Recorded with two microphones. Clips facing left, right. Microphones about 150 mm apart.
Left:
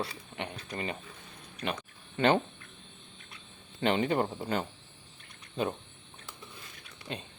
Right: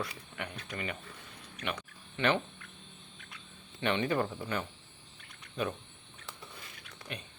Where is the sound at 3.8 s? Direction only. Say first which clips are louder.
Left 3 dB; 30° left (ahead or behind).